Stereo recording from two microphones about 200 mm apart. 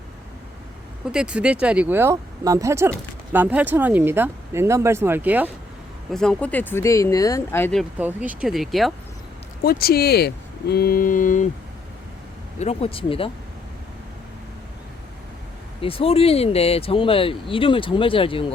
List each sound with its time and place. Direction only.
1.1 s speech: 5° right (ahead or behind)
6.1 s speech: 5° left (ahead or behind)
9.6 s speech: 50° left (ahead or behind)
12.5 s speech: 30° left (ahead or behind)
15.8 s speech: 30° left (ahead or behind)